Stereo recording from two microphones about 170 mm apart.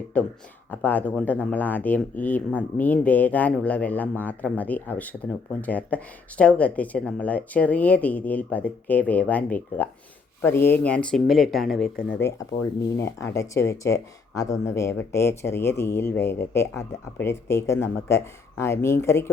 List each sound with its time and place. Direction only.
0.1 s speech: 10° left (ahead or behind)